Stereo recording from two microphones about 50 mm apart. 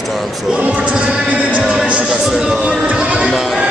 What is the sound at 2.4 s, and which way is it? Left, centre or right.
Speech, centre.